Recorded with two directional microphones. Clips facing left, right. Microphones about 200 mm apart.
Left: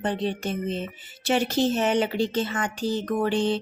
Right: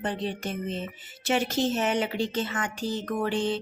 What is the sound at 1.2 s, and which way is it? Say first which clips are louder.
Speech: left 3 dB; 35° left (ahead or behind).